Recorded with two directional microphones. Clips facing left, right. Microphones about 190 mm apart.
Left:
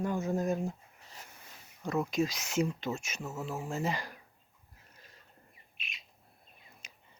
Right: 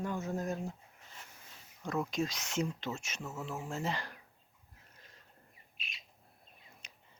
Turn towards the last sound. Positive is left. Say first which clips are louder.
# left 1 dB
turn(degrees=10)  # may be behind; listen again after turning